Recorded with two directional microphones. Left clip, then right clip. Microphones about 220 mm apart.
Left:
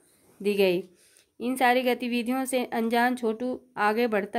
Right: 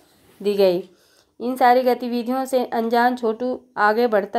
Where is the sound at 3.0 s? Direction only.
30° left (ahead or behind).